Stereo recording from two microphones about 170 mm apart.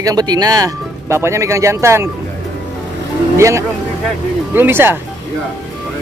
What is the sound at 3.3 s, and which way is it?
Speech, 15° right (ahead or behind).